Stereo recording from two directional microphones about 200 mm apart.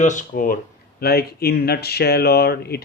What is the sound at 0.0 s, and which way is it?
Speech, 40° left (ahead or behind).